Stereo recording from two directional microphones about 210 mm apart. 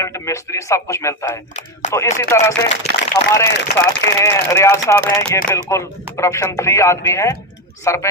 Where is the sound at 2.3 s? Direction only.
15° left (ahead or behind).